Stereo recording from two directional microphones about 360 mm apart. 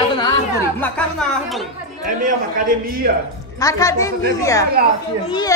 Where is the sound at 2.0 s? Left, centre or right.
Right.